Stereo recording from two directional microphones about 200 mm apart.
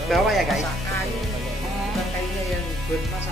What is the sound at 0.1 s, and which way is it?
Music, centre (ahead or behind).